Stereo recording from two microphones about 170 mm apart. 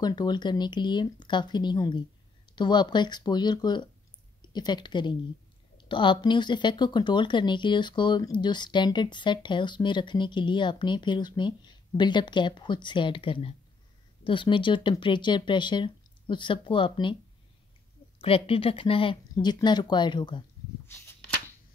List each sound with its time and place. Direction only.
0.0 s speech: 25° left (ahead or behind)
18.2 s speech: 35° left (ahead or behind)
20.9 s shuffling cards: 15° left (ahead or behind)